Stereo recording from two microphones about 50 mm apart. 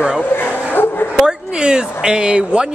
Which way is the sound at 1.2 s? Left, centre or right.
Centre.